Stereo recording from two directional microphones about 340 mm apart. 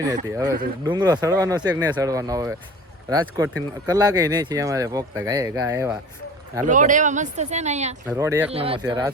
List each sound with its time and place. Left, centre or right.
0.0 s speech: centre
6.7 s speech: right
8.0 s speech: centre